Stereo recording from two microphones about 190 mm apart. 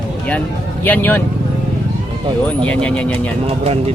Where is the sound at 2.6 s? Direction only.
5° left (ahead or behind).